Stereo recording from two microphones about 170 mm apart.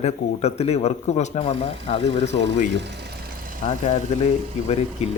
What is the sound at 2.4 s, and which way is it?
Speech, 90° right.